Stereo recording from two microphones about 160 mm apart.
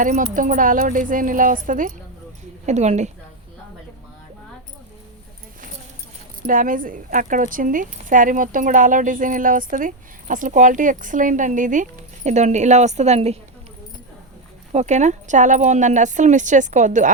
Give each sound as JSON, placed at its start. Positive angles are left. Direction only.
{"t": 0.0, "sound": "speech", "side_deg": -55}
{"t": 6.4, "sound": "speech", "side_deg": -60}
{"t": 14.7, "sound": "speech", "side_deg": -45}